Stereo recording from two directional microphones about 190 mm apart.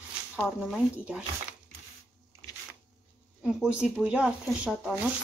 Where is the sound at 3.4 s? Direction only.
5° right (ahead or behind).